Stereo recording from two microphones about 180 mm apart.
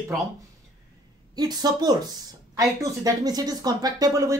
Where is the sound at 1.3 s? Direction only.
20° right (ahead or behind).